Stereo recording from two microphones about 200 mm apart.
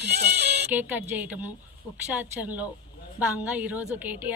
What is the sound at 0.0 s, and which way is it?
Music, 55° right (ahead or behind).